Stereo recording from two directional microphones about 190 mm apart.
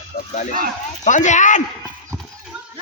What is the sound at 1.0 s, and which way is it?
Speech, 40° left (ahead or behind).